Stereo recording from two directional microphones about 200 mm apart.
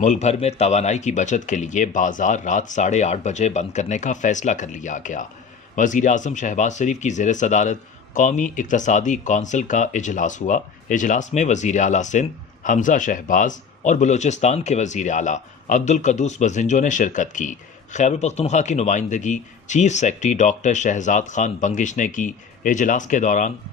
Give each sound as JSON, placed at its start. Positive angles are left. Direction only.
{"t": 0.0, "sound": "speech", "side_deg": 35}